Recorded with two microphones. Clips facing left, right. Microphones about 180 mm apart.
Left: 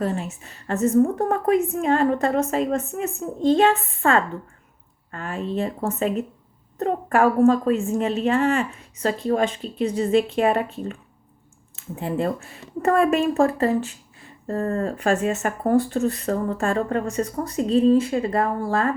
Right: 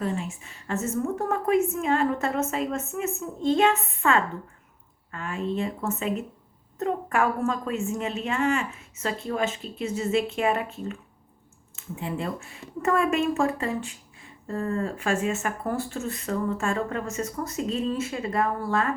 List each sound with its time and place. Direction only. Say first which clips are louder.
0.0 s speech: left 4 dB; 40° left (ahead or behind)
11.8 s speech: left 6 dB; 40° left (ahead or behind)